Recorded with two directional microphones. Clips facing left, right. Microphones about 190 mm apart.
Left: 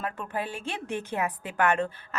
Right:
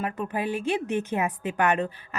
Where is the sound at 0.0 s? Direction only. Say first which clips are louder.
Right 4 dB; 15° right (ahead or behind).